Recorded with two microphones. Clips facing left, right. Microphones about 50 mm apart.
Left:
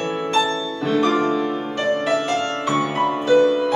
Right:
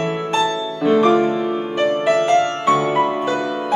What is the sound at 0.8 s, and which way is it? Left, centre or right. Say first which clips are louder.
Music: right 5 dB; right.